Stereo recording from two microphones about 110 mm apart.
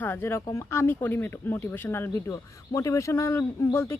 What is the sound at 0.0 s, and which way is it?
Speech, 20° left (ahead or behind).